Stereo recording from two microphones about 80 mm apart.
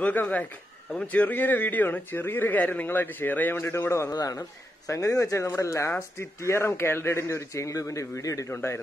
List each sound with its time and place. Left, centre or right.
0.0 s speech: left
4.1 s a man's voice: left
8.5 s a man's voice: left